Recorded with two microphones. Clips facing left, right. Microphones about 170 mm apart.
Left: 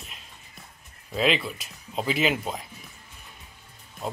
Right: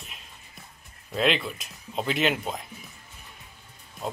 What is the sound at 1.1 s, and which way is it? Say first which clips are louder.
Speech: even; centre (ahead or behind).